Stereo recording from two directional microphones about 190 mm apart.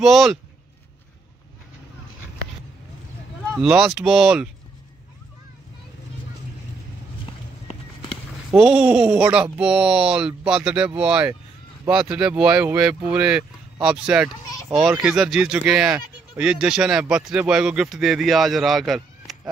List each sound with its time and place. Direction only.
0.0 s speech: centre (ahead or behind)
3.5 s speech: 5° right (ahead or behind)
7.6 s run: 30° left (ahead or behind)
8.5 s speech: 5° right (ahead or behind)